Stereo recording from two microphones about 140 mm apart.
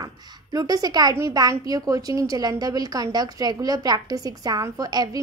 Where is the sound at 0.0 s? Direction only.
25° right (ahead or behind).